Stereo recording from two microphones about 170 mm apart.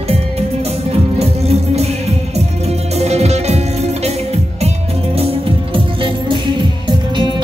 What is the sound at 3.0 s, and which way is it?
Music, 40° right (ahead or behind).